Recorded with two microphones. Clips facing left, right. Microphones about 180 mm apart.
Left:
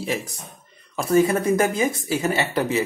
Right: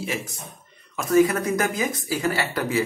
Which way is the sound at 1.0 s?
30° left (ahead or behind).